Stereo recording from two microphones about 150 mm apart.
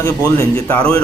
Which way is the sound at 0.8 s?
40° right (ahead or behind).